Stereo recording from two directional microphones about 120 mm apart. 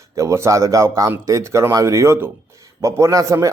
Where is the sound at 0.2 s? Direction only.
25° right (ahead or behind).